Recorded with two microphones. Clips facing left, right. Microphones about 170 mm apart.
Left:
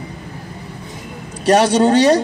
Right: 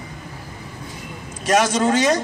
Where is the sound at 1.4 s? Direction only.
35° left (ahead or behind).